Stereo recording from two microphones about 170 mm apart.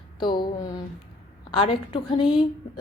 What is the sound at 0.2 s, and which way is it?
Speech, 25° left (ahead or behind).